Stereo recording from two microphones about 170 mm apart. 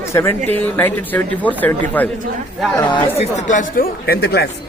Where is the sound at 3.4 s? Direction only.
55° left (ahead or behind).